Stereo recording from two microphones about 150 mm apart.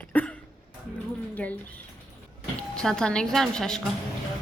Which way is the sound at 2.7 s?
5° left (ahead or behind).